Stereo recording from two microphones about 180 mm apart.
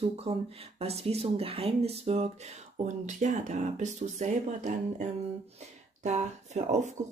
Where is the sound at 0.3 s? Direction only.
35° right (ahead or behind).